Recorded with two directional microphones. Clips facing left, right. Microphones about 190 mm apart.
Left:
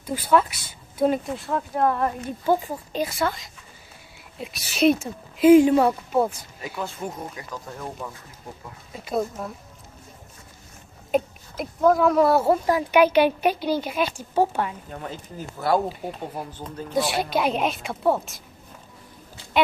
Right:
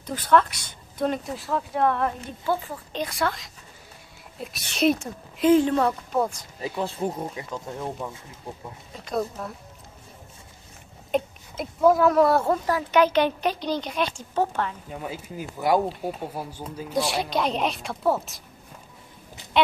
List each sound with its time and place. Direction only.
0.0 s speech: 10° left (ahead or behind)
2.4 s speech: 15° left (ahead or behind)
6.6 s speech: 30° right (ahead or behind)
8.9 s speech: 5° left (ahead or behind)
11.1 s speech: centre (ahead or behind)
14.9 s speech: 5° right (ahead or behind)
15.9 s speech: 5° right (ahead or behind)